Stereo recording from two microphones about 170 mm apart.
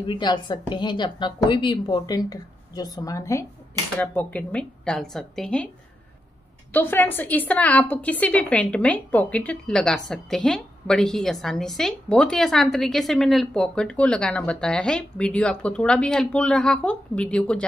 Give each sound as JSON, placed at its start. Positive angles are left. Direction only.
{"t": 0.0, "sound": "a woman's voice", "side_deg": 25}
{"t": 6.7, "sound": "a woman's voice", "side_deg": 10}